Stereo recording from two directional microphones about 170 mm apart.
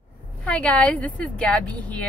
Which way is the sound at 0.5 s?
5° left (ahead or behind).